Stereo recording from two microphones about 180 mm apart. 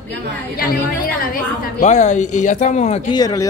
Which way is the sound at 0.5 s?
55° left (ahead or behind).